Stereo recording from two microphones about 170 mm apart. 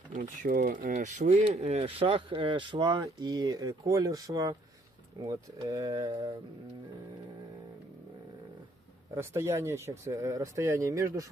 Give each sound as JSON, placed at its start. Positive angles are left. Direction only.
{"t": 0.1, "sound": "speech", "side_deg": -60}
{"t": 1.5, "sound": "speech", "side_deg": -40}
{"t": 9.1, "sound": "speech", "side_deg": -15}